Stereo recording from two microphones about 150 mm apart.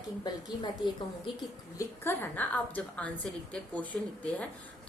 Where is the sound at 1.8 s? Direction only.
15° left (ahead or behind).